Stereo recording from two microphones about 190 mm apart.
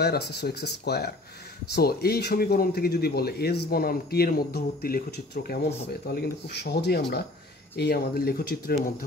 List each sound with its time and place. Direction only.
0.0 s speech: 60° left (ahead or behind)